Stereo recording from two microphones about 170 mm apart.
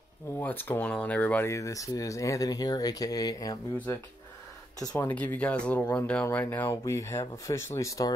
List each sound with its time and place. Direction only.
0.4 s speech: 10° left (ahead or behind)
4.7 s speech: 15° left (ahead or behind)